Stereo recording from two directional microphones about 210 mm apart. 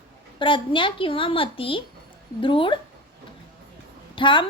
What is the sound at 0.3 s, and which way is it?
A woman's voice, 25° left (ahead or behind).